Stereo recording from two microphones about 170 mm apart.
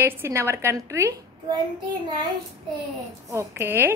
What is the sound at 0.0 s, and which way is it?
A woman's voice, 15° right (ahead or behind).